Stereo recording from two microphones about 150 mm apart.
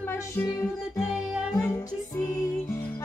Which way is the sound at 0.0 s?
15° left (ahead or behind).